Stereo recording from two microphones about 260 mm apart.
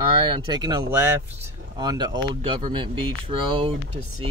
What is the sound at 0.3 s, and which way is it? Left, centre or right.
Speech, centre.